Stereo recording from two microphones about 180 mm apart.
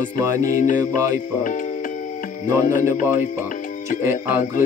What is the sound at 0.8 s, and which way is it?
Music, 20° right (ahead or behind).